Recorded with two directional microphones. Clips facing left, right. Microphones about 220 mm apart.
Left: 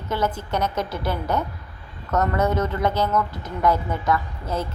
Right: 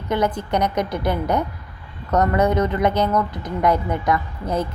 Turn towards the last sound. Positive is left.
turn(degrees=-15)  # may be behind; listen again after turning